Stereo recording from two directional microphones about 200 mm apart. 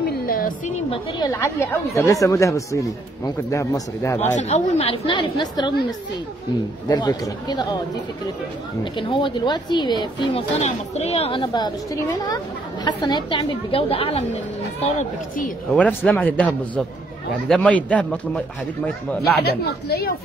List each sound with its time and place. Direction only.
0.0 s music: 45° left (ahead or behind)
1.3 s speech: 15° left (ahead or behind)
4.4 s speech: 35° left (ahead or behind)
6.9 s speech: 20° left (ahead or behind)
8.9 s speech: 25° left (ahead or behind); by 15.5 s 40° left (ahead or behind)
15.7 s speech: 10° left (ahead or behind)
19.4 s speech: 50° left (ahead or behind)